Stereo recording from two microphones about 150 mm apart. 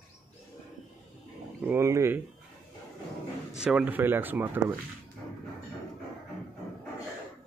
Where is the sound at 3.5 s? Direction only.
5° right (ahead or behind).